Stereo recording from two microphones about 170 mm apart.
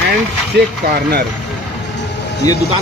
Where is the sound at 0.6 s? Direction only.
75° right (ahead or behind).